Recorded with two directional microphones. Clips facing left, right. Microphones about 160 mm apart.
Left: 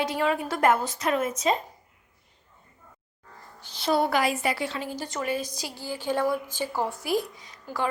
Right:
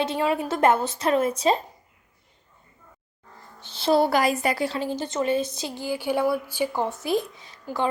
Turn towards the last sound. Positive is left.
turn(degrees=-25)  # may be behind; listen again after turning